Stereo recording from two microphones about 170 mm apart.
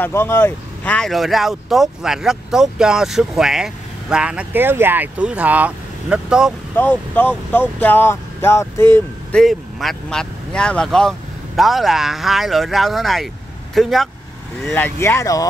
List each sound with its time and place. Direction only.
0.0 s speech: 15° left (ahead or behind); by 6.5 s 5° right (ahead or behind)
6.7 s speech: 10° left (ahead or behind)
9.4 s speech: centre (ahead or behind)
14.6 s speech: 15° left (ahead or behind)